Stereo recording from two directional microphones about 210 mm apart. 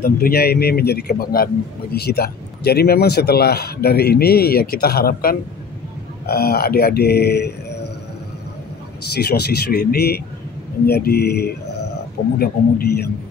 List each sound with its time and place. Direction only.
0.0 s speech: 45° left (ahead or behind)
9.1 s speech: 50° left (ahead or behind)